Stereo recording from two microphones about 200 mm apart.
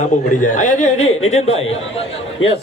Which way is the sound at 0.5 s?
40° left (ahead or behind).